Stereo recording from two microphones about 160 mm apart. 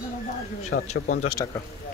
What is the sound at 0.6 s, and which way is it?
Speech, 50° left (ahead or behind).